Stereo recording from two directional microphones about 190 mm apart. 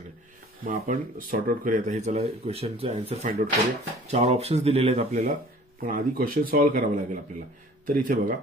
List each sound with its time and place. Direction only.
0.7 s speech: 45° right (ahead or behind)
5.8 s speech: 50° right (ahead or behind)